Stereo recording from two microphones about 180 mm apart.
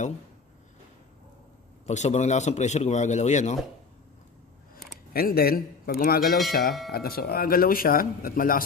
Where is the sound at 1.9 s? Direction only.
40° left (ahead or behind).